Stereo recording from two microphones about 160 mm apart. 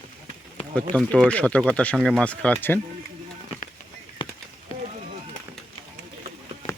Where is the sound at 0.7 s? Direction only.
5° left (ahead or behind).